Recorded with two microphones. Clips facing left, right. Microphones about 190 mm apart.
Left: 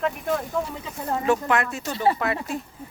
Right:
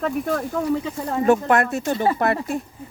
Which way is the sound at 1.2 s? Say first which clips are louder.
Right 6 dB; 50° right (ahead or behind).